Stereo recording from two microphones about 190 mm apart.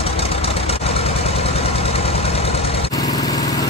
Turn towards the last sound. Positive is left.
turn(degrees=20)  # may be behind; listen again after turning